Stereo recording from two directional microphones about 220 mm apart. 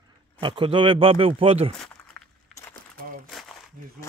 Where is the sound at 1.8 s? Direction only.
5° left (ahead or behind).